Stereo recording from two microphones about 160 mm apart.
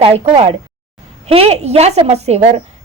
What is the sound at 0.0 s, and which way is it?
A woman's voice, 35° right (ahead or behind).